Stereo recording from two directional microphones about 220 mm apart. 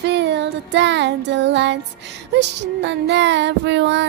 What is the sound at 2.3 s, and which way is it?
Child singing, 50° right (ahead or behind).